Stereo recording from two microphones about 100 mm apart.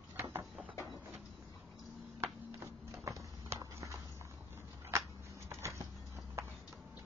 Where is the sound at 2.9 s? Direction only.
30° right (ahead or behind).